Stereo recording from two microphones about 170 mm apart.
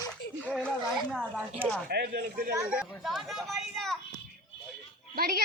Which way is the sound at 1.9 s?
70° right (ahead or behind).